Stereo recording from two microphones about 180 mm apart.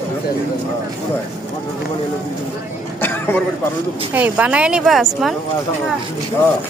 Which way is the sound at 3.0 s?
10° left (ahead or behind).